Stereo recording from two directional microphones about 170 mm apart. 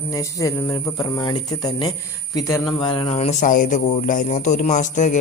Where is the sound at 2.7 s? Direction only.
30° left (ahead or behind).